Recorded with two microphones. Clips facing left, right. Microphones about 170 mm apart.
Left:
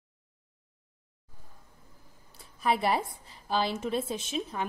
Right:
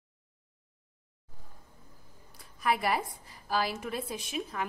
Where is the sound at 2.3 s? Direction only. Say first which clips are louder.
Left 2 dB; 30° left (ahead or behind).